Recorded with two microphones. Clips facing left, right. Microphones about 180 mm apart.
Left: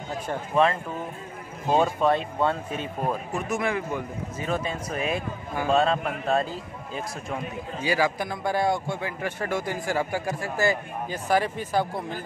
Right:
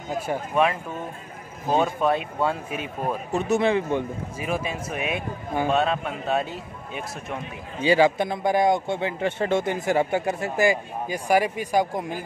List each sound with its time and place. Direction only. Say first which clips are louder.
0.3 s speech: even; 10° right (ahead or behind)
3.3 s a man's voice: right 10 dB; 25° right (ahead or behind)
4.4 s speech: even; 10° right (ahead or behind)
7.8 s a man's voice: right 6 dB; 25° right (ahead or behind)